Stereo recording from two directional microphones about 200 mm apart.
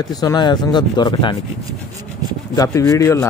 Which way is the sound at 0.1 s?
20° left (ahead or behind).